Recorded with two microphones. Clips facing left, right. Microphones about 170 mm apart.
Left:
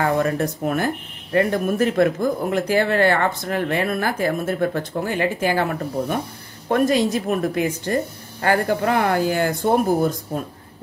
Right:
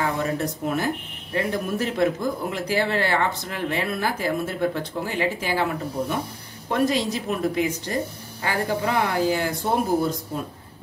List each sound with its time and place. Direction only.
0.0 s speech: 55° left (ahead or behind)